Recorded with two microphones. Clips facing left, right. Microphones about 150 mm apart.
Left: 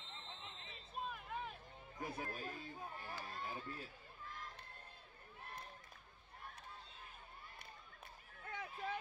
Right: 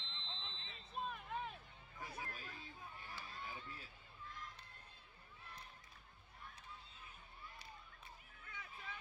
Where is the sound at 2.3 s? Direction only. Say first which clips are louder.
Left 6 dB; 40° left (ahead or behind).